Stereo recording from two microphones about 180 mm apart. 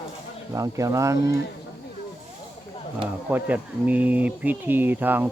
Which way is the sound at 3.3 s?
10° right (ahead or behind).